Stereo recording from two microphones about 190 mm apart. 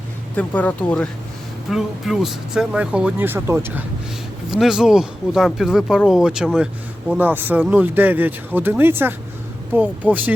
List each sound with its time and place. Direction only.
0.3 s speech: 10° left (ahead or behind); by 10.3 s 10° right (ahead or behind)